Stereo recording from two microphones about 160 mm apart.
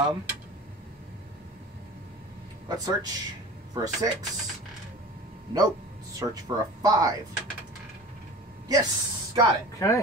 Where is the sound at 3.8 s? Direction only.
25° right (ahead or behind).